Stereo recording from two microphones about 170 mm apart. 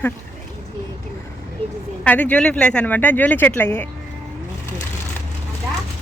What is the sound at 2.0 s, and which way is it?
Speech, 10° left (ahead or behind).